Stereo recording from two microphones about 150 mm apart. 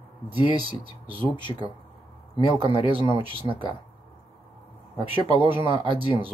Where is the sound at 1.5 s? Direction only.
30° left (ahead or behind).